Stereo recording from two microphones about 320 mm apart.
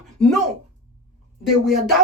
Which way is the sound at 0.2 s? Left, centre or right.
Centre.